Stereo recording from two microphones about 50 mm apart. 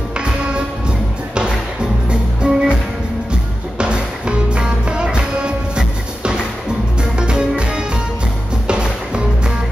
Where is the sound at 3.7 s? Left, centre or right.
Centre.